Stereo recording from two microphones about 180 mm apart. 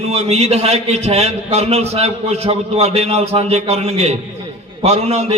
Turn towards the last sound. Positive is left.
turn(degrees=-35)  # may be behind; listen again after turning